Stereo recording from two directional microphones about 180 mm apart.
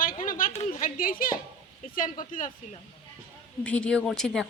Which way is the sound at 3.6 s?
5° left (ahead or behind).